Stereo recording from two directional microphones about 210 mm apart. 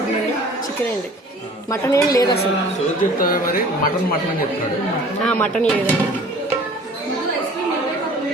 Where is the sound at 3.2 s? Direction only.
40° left (ahead or behind).